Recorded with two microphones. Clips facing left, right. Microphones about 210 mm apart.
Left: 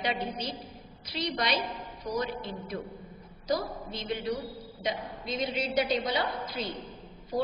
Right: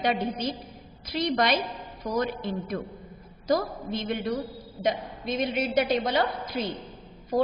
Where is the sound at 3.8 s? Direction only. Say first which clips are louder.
Right 3 dB; 60° right (ahead or behind).